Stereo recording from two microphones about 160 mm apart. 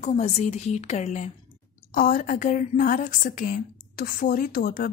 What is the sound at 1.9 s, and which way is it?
A woman's voice, 60° left (ahead or behind).